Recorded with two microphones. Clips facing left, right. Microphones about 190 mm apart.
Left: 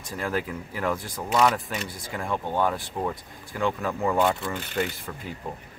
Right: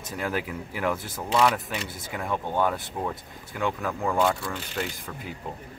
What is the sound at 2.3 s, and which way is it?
Speech, 10° left (ahead or behind).